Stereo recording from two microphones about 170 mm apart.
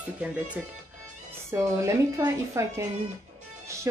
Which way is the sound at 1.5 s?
15° right (ahead or behind).